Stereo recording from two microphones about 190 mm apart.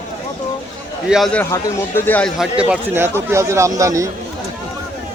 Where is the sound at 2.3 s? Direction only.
5° right (ahead or behind).